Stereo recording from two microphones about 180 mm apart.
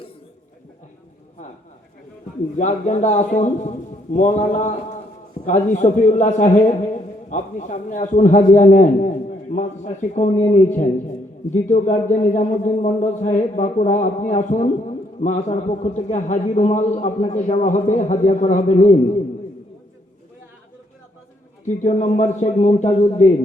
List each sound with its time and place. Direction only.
2.6 s a man's voice: 40° left (ahead or behind)
12.1 s a man's voice: 40° left (ahead or behind)
21.8 s a man's voice: 45° left (ahead or behind)